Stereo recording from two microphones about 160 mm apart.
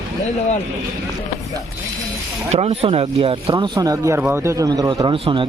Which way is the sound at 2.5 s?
40° right (ahead or behind).